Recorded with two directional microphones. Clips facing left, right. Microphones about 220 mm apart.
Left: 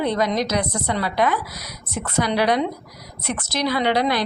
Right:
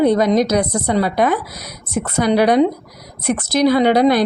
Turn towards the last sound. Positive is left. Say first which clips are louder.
# right 8 dB
turn(degrees=-45)  # may be behind; listen again after turning